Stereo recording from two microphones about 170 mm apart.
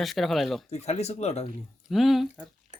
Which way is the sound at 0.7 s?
40° left (ahead or behind).